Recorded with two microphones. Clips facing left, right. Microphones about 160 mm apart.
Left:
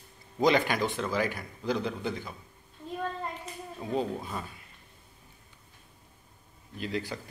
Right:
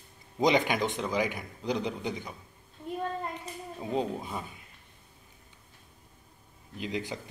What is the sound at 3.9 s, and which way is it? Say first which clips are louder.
Speech: even; 15° right (ahead or behind).